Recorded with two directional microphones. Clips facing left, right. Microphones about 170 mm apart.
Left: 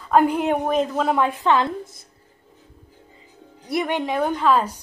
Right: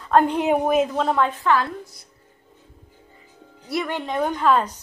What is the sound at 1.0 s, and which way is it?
Speech, 15° left (ahead or behind).